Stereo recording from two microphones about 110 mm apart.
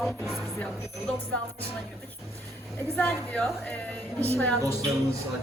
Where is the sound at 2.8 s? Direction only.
15° left (ahead or behind).